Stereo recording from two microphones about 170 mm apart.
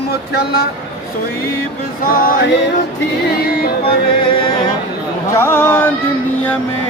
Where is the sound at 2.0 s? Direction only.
55° left (ahead or behind).